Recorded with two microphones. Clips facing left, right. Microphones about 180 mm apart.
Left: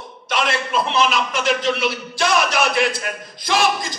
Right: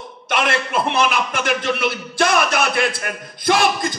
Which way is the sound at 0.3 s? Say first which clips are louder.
Right 1 dB; 55° right (ahead or behind).